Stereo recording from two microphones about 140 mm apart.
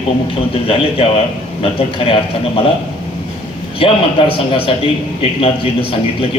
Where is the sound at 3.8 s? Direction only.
40° left (ahead or behind).